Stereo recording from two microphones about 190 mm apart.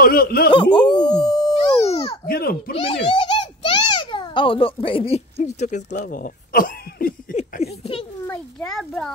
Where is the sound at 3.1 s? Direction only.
25° left (ahead or behind); by 7.4 s 50° left (ahead or behind).